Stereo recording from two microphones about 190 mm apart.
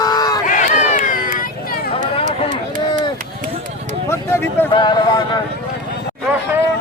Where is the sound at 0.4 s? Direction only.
40° left (ahead or behind).